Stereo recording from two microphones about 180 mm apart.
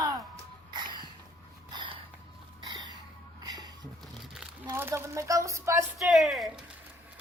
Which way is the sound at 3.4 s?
20° right (ahead or behind).